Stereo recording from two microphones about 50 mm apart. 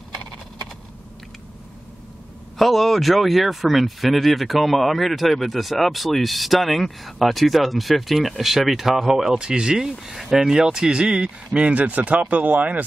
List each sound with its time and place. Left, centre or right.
2.6 s speech: centre; by 12.8 s right